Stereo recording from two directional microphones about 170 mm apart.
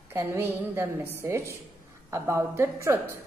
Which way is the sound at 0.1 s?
15° right (ahead or behind).